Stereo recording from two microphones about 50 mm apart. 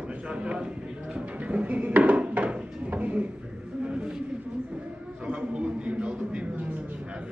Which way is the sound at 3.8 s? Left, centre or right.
Centre.